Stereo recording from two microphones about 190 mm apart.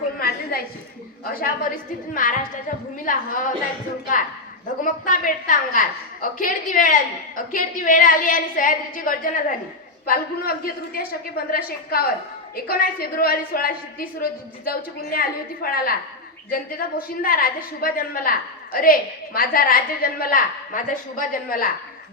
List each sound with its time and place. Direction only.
0.5 s a sound: 55° left (ahead or behind)
1.2 s a woman's voice: 50° left (ahead or behind)
4.8 s a woman's voice: 45° left (ahead or behind)